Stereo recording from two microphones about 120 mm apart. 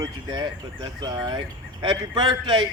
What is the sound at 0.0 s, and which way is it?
Speech, 35° right (ahead or behind).